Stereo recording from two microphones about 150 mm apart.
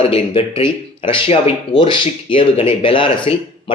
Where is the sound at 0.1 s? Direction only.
40° left (ahead or behind).